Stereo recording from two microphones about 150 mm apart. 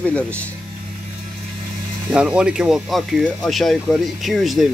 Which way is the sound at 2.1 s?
5° right (ahead or behind).